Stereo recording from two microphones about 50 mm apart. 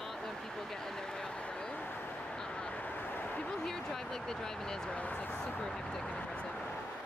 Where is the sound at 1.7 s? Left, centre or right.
Left.